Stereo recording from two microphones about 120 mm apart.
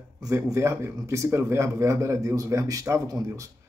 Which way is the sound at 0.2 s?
25° right (ahead or behind).